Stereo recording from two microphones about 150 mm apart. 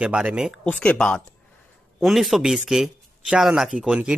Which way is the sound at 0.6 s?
10° left (ahead or behind).